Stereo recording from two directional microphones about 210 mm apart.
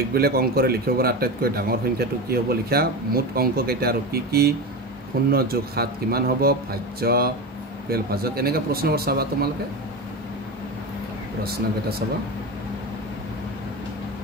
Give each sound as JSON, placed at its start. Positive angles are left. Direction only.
{"t": 0.1, "sound": "speech", "side_deg": -45}